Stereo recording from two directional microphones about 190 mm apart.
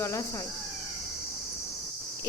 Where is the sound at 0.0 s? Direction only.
15° left (ahead or behind).